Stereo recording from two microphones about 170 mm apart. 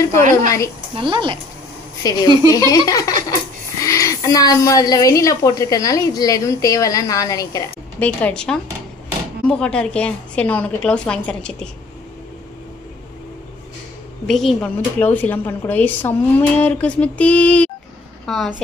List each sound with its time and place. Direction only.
0.9 s speech: 30° right (ahead or behind)
2.0 s a woman's voice: 20° left (ahead or behind)
8.0 s a woman's voice: 5° left (ahead or behind)
14.2 s speech: centre (ahead or behind)